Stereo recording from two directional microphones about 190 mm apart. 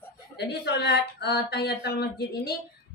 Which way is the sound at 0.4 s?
60° left (ahead or behind).